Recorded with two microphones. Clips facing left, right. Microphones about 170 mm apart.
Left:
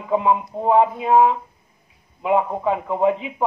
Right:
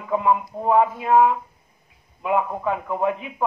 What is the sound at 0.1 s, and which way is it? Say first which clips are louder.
Speech: left 2 dB; 25° left (ahead or behind).